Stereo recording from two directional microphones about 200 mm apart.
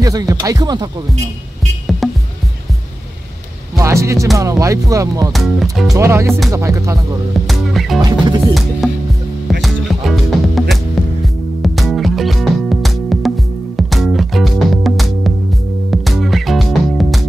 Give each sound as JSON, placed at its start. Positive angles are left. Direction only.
{"t": 0.0, "sound": "speech", "side_deg": -15}
{"t": 3.7, "sound": "speech", "side_deg": -15}
{"t": 5.3, "sound": "music", "side_deg": 0}
{"t": 5.9, "sound": "speech", "side_deg": -15}
{"t": 7.3, "sound": "music", "side_deg": 0}
{"t": 8.0, "sound": "music", "side_deg": -20}
{"t": 8.8, "sound": "music", "side_deg": 0}